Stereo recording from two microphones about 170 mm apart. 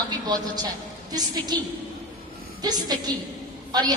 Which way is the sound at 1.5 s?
25° right (ahead or behind).